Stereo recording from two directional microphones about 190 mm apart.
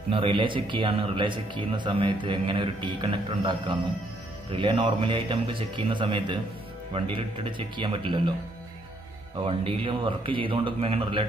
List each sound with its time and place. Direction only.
0.1 s speech: 25° right (ahead or behind)
9.4 s speech: 25° right (ahead or behind)